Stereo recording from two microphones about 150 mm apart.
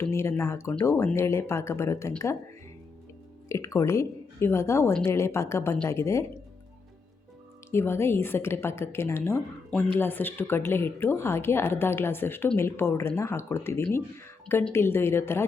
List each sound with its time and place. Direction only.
0.0 s a woman's voice: 15° left (ahead or behind)
3.5 s a woman's voice: 20° left (ahead or behind)
7.7 s a woman's voice: 15° left (ahead or behind)